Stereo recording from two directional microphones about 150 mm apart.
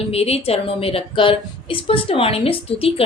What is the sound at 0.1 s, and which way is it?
A woman's voice, 40° left (ahead or behind).